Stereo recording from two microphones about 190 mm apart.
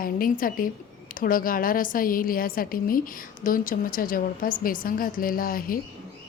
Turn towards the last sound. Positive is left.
turn(degrees=50)  # may be behind; listen again after turning